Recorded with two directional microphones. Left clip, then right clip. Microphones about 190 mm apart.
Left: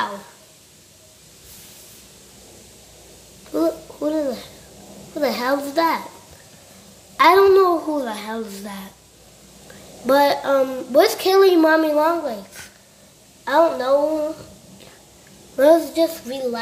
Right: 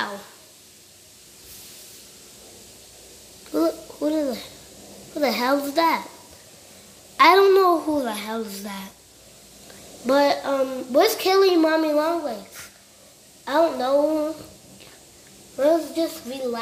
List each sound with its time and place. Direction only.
3.5 s a woman's voice: 5° right (ahead or behind)
7.2 s a woman's voice: 5° right (ahead or behind)
10.0 s a woman's voice: centre (ahead or behind)
13.5 s a woman's voice: centre (ahead or behind)
15.5 s a child's voice: 20° left (ahead or behind)